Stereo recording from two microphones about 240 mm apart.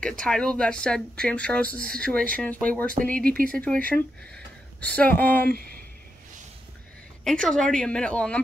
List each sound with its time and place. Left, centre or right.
0.2 s speech: centre
5.4 s speech: right
7.2 s speech: centre